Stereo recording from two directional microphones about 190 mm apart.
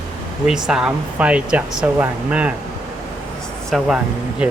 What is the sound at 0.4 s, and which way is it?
Speech, 5° right (ahead or behind).